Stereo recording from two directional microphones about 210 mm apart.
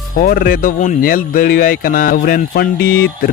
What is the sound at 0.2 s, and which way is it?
Speech, 45° left (ahead or behind).